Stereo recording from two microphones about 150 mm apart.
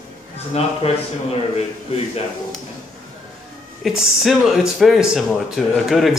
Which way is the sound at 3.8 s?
5° right (ahead or behind).